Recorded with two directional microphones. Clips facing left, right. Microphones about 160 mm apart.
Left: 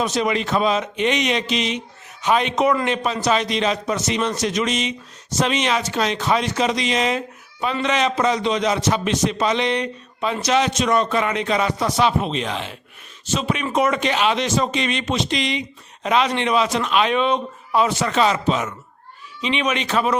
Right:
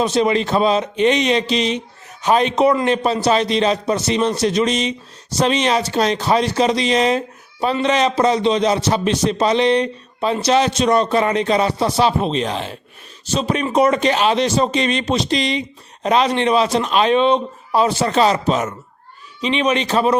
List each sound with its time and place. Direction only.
0.0 s a man's voice: 30° right (ahead or behind)